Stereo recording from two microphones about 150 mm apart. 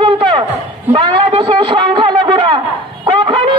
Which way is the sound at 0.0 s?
35° right (ahead or behind).